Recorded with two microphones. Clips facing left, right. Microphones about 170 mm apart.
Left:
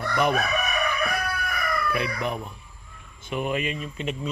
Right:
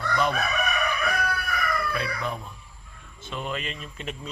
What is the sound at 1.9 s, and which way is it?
Speech, 15° left (ahead or behind).